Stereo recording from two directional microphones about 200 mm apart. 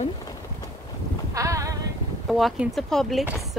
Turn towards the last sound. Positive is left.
turn(degrees=0)  # may be behind; listen again after turning